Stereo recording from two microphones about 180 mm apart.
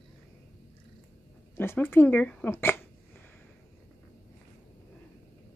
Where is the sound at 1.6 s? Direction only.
10° left (ahead or behind).